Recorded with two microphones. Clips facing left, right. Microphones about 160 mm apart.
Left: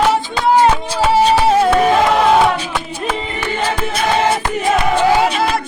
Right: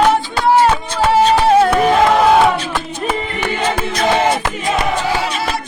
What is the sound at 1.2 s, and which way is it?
Music, centre (ahead or behind).